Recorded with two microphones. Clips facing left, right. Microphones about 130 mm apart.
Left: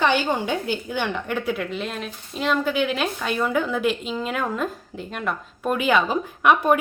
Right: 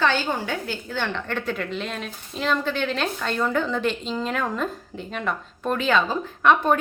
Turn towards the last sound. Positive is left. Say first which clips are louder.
# left 1 dB
turn(degrees=10)  # may be behind; listen again after turning